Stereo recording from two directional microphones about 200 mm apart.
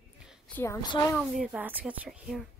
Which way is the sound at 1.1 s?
Centre (ahead or behind).